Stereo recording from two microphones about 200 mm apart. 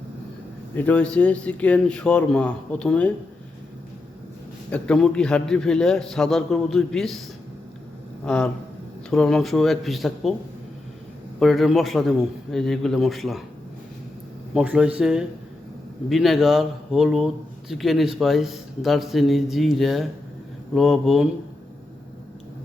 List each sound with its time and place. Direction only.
0.8 s a man's voice: 5° left (ahead or behind)
4.7 s a man's voice: 5° left (ahead or behind)
8.2 s a man's voice: 5° left (ahead or behind)
11.3 s a man's voice: centre (ahead or behind)
14.5 s a man's voice: 5° right (ahead or behind)